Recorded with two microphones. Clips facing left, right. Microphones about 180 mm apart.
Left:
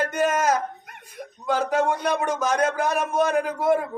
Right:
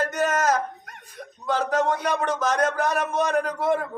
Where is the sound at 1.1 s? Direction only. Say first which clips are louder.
Left 1 dB; 10° left (ahead or behind).